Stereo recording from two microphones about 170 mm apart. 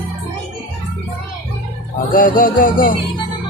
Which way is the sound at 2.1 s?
55° left (ahead or behind).